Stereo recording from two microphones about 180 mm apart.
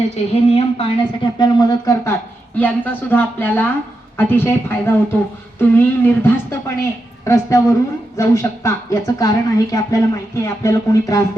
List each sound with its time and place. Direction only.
0.4 s a woman's voice: 35° left (ahead or behind)
2.6 s a woman's voice: 10° left (ahead or behind)